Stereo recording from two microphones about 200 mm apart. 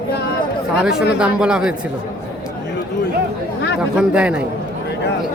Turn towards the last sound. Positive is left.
turn(degrees=-5)  # may be behind; listen again after turning